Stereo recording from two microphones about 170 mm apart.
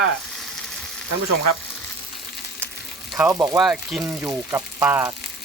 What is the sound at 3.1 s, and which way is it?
Speech, 15° right (ahead or behind).